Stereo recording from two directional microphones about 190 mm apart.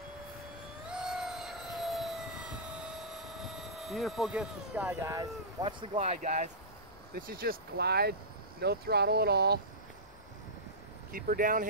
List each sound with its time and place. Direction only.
0.8 s vehicle: 5° right (ahead or behind); by 6.5 s 40° right (ahead or behind)
7.2 s speech: 50° right (ahead or behind)
11.1 s speech: 50° right (ahead or behind)